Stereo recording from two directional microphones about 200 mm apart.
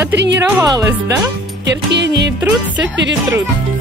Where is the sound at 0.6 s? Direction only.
15° right (ahead or behind).